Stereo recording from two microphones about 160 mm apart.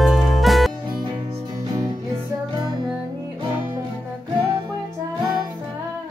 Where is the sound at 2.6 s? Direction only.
25° right (ahead or behind).